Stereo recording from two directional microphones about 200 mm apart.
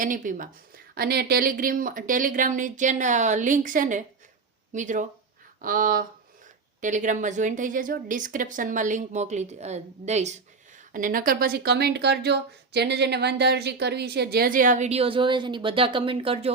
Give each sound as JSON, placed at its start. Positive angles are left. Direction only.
{"t": 0.0, "sound": "a woman's voice", "side_deg": -40}